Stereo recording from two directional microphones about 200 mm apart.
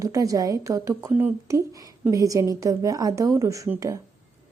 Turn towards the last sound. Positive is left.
turn(degrees=-15)  # may be behind; listen again after turning